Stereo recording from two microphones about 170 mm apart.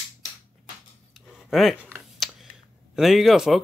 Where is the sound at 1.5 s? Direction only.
Centre (ahead or behind).